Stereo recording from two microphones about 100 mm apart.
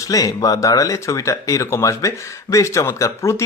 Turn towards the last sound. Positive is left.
turn(degrees=30)  # may be behind; listen again after turning